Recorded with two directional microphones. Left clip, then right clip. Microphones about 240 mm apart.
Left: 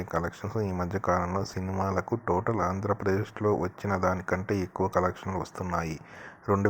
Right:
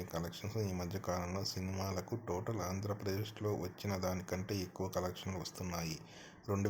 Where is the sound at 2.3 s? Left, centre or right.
Centre.